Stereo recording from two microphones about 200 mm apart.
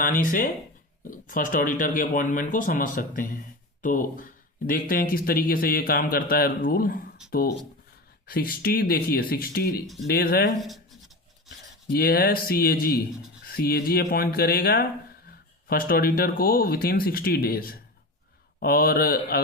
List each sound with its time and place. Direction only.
0.0 s speech: 40° left (ahead or behind)
8.3 s speech: 50° left (ahead or behind)
9.8 s speech: centre (ahead or behind)
10.1 s speech: 50° left (ahead or behind)
10.6 s scratch: centre (ahead or behind)
11.9 s speech: 50° left (ahead or behind)